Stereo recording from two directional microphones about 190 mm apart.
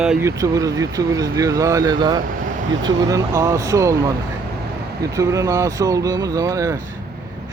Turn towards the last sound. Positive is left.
turn(degrees=-15)  # may be behind; listen again after turning